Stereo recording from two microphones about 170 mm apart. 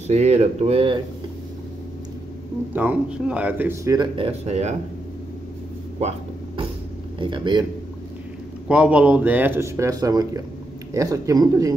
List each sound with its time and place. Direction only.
0.1 s speech: 40° right (ahead or behind)
2.7 s speech: 10° right (ahead or behind)
4.3 s speech: 40° right (ahead or behind)
5.9 s a sound: 35° right (ahead or behind)
7.2 s speech: 30° right (ahead or behind)
8.6 s speech: 5° right (ahead or behind)